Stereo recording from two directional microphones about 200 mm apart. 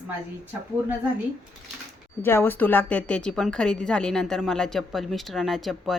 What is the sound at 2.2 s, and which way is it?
A woman's voice, 10° left (ahead or behind).